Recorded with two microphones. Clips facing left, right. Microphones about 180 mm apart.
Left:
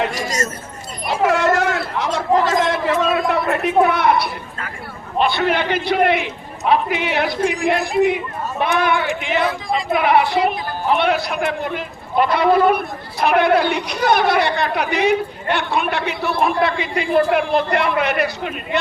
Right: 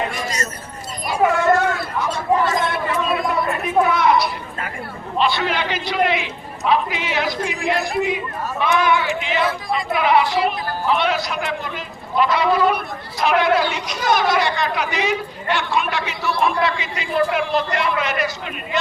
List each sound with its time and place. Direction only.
0.0 s a sound: 90° left
1.2 s chatter: 80° left; by 4.3 s 60° left (ahead or behind)
5.1 s a man's voice: 55° left (ahead or behind)